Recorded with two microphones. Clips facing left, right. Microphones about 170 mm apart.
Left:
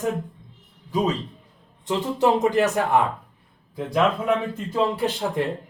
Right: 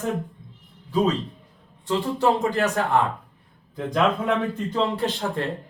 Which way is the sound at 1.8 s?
20° left (ahead or behind).